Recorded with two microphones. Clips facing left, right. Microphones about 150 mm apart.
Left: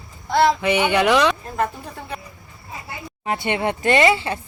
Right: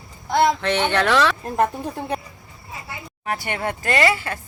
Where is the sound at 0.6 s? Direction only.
10° left (ahead or behind).